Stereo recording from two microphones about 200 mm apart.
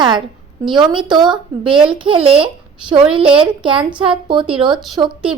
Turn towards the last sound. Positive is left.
turn(degrees=-25)  # may be behind; listen again after turning